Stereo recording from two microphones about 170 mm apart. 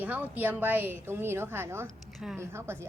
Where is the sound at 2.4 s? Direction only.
15° right (ahead or behind).